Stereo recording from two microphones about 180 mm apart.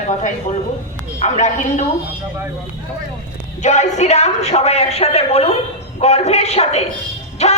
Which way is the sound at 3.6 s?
40° left (ahead or behind).